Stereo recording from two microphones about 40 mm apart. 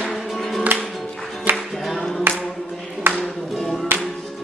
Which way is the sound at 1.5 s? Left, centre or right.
Right.